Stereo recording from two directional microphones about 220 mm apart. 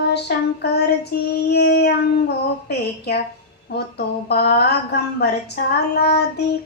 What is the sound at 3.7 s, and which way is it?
Speech, 50° left (ahead or behind).